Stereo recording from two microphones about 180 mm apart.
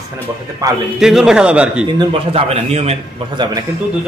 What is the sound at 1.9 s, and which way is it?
A man's voice, 35° right (ahead or behind).